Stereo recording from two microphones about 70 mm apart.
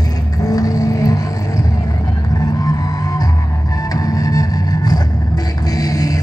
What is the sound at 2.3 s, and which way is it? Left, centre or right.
Music, left.